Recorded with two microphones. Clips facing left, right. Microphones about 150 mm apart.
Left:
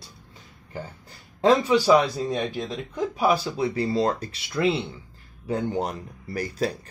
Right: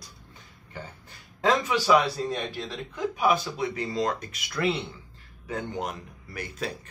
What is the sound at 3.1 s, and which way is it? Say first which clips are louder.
Speech: left 2 dB; 35° left (ahead or behind).